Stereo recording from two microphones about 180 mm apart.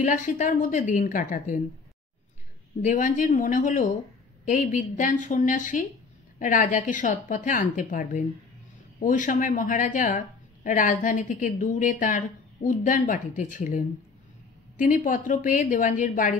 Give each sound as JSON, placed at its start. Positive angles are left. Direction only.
{"t": 0.0, "sound": "a woman's voice", "side_deg": 45}
{"t": 2.8, "sound": "a woman's voice", "side_deg": 45}